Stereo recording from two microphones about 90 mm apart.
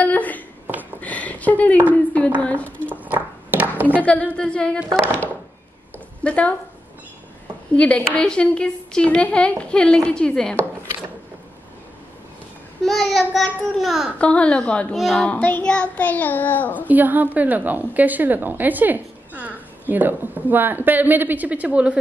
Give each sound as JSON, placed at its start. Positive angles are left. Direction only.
{"t": 0.0, "sound": "a sound", "side_deg": 20}
{"t": 2.4, "sound": "a woman's voice", "side_deg": 15}
{"t": 2.9, "sound": "a sound", "side_deg": -20}
{"t": 4.0, "sound": "a woman's voice", "side_deg": 15}
{"t": 6.2, "sound": "a woman's voice", "side_deg": 15}
{"t": 7.7, "sound": "a woman's voice", "side_deg": 15}
{"t": 12.8, "sound": "a child's voice", "side_deg": 5}
{"t": 14.1, "sound": "a woman's voice", "side_deg": 15}
{"t": 15.0, "sound": "a child's voice", "side_deg": 0}
{"t": 15.2, "sound": "music", "side_deg": 20}
{"t": 16.8, "sound": "a woman's voice", "side_deg": -20}